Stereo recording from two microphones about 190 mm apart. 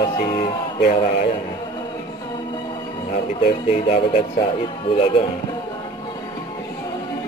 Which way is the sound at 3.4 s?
35° left (ahead or behind).